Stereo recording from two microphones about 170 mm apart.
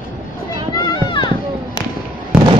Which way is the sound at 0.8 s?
25° left (ahead or behind).